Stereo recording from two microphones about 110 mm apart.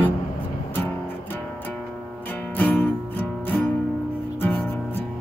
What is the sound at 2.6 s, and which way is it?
Music, 15° left (ahead or behind).